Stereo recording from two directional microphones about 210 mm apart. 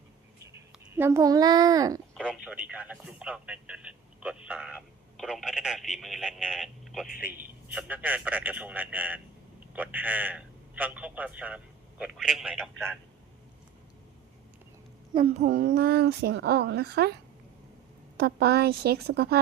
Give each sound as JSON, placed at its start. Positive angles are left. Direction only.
{"t": 0.5, "sound": "a child's voice", "side_deg": -10}
{"t": 2.1, "sound": "a man's voice", "side_deg": -5}
{"t": 15.1, "sound": "a woman's voice", "side_deg": -30}
{"t": 18.2, "sound": "a woman's voice", "side_deg": -50}